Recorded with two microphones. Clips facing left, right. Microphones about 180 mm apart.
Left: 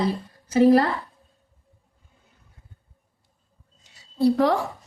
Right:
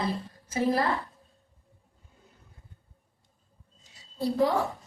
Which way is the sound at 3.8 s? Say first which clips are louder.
Left 10 dB; 70° left (ahead or behind).